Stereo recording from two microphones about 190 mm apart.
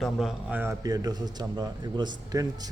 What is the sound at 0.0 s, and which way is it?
A man's voice, centre (ahead or behind).